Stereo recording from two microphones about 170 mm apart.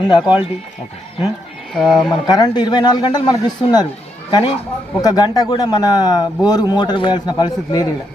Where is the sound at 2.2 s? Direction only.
25° left (ahead or behind).